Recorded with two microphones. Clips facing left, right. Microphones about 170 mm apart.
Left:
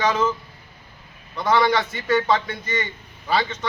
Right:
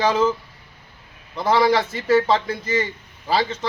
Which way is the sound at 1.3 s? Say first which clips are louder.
Right 2 dB; 30° right (ahead or behind).